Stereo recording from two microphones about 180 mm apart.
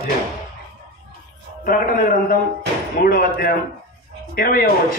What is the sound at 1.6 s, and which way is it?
Speech, 50° left (ahead or behind).